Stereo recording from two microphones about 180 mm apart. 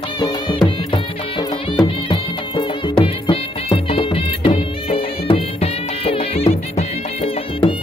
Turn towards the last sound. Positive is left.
turn(degrees=30)  # may be behind; listen again after turning